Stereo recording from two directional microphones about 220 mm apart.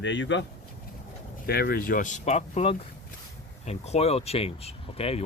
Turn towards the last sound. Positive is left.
turn(degrees=25)  # may be behind; listen again after turning